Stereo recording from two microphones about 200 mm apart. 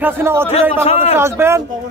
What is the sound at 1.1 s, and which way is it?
Speech, 10° right (ahead or behind).